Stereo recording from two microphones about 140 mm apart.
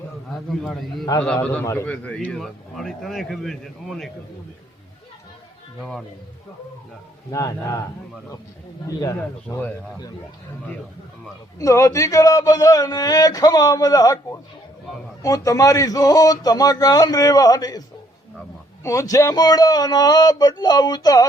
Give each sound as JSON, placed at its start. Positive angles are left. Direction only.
{"t": 0.3, "sound": "a man's voice", "side_deg": 0}
{"t": 1.4, "sound": "a man's voice", "side_deg": 15}
{"t": 5.8, "sound": "a man's voice", "side_deg": 0}
{"t": 7.3, "sound": "speech", "side_deg": 25}
{"t": 8.9, "sound": "speech", "side_deg": 25}
{"t": 9.5, "sound": "speech", "side_deg": 15}
{"t": 11.6, "sound": "speech", "side_deg": 20}